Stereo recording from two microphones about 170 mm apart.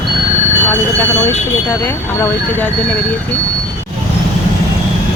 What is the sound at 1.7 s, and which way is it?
Speech, 10° left (ahead or behind).